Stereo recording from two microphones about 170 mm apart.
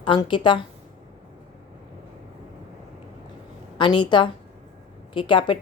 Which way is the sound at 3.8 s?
25° left (ahead or behind).